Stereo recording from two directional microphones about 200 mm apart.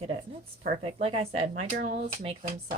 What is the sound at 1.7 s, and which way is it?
Speech, 45° right (ahead or behind).